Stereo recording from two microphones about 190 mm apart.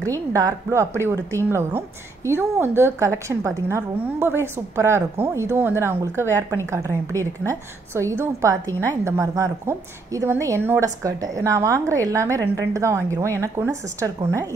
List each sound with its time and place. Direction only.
0.0 s a woman's voice: 15° right (ahead or behind)
8.6 s a woman's voice: 10° left (ahead or behind)
9.0 s a woman's voice: 15° right (ahead or behind)